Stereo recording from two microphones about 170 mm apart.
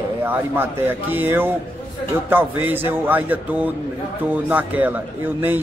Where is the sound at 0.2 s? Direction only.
15° right (ahead or behind).